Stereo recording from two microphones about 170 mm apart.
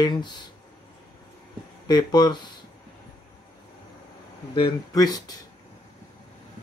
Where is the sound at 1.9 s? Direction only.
25° left (ahead or behind).